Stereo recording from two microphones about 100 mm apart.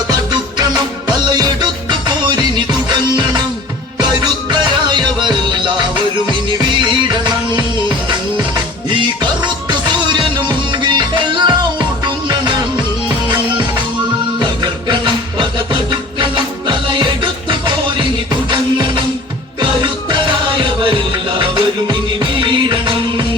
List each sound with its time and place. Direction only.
0.1 s music: 45° right (ahead or behind)
3.9 s music: 45° right (ahead or behind)
14.3 s music: 50° right (ahead or behind)